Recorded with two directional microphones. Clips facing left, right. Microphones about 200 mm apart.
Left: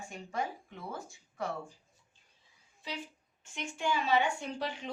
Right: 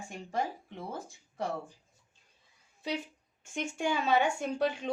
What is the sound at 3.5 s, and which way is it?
A woman's voice, 50° right (ahead or behind).